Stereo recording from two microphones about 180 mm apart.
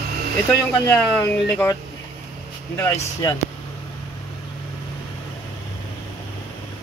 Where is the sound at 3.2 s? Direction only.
20° left (ahead or behind).